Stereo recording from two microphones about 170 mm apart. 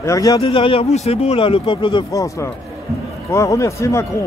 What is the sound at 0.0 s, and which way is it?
Speech, 20° left (ahead or behind).